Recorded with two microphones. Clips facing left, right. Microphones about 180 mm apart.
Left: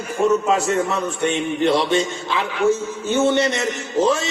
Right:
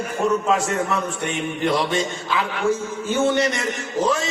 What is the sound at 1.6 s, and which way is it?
Speech, 25° left (ahead or behind).